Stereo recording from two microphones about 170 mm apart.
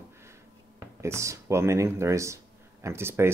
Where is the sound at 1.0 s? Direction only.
15° right (ahead or behind).